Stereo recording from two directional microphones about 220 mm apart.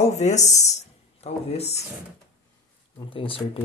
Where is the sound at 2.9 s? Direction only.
25° left (ahead or behind).